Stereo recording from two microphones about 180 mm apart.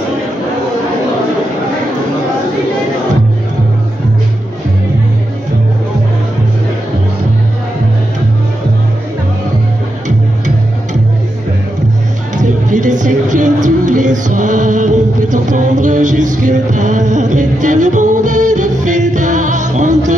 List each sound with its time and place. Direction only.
12.4 s music: 45° right (ahead or behind)